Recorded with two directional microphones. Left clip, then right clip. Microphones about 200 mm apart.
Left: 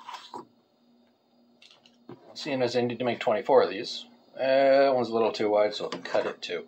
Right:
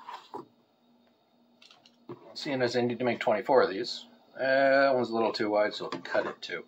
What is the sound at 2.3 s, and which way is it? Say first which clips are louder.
Speech: left 2 dB; 10° left (ahead or behind).